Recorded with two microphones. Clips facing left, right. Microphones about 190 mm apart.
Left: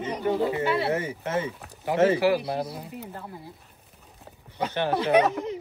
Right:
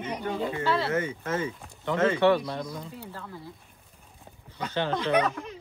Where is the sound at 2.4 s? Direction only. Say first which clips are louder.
Left 3 dB; 65° left (ahead or behind).